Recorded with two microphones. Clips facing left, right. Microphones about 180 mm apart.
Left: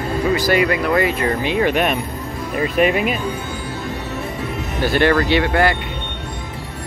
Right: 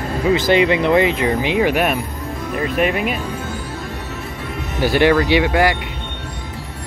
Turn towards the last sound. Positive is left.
turn(degrees=-10)  # may be behind; listen again after turning